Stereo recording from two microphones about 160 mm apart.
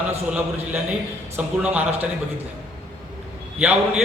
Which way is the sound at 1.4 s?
10° right (ahead or behind).